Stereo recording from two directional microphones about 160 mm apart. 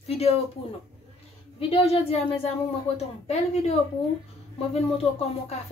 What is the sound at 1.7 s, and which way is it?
A woman's voice, 35° left (ahead or behind).